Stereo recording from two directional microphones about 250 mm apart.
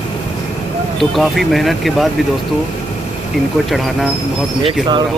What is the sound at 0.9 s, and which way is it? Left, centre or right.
Speech, centre.